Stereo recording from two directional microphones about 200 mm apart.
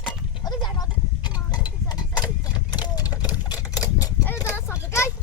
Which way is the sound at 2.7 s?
20° left (ahead or behind).